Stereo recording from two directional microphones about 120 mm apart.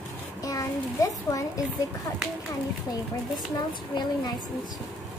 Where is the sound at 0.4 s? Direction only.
30° left (ahead or behind).